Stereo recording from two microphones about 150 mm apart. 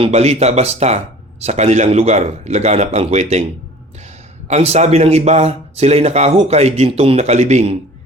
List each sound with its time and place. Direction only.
0.0 s speech: 45° right (ahead or behind)